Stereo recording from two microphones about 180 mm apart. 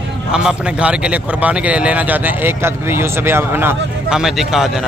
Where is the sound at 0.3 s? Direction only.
5° right (ahead or behind).